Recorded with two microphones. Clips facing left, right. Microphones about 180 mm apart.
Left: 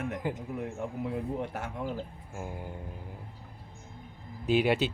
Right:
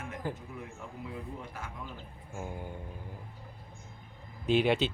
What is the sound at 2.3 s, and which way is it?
Speech, 10° left (ahead or behind).